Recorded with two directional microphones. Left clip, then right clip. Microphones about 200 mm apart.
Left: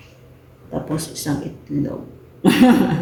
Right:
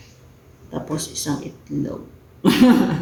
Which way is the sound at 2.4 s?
Centre (ahead or behind).